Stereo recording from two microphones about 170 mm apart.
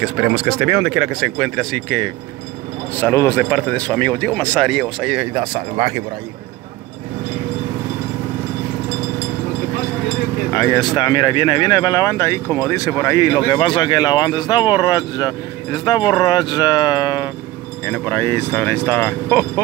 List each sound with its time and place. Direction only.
0.0 s speech: 10° right (ahead or behind)
3.0 s speech: 15° left (ahead or behind)
5.3 s speech: 35° right (ahead or behind)
10.5 s speech: 20° left (ahead or behind)
17.8 s speech: 10° left (ahead or behind)